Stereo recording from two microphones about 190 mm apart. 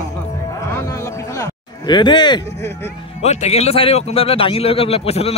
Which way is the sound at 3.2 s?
35° left (ahead or behind).